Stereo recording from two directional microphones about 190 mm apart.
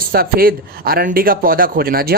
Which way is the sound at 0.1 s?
50° right (ahead or behind).